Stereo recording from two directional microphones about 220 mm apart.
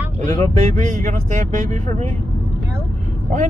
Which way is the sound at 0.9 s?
35° right (ahead or behind).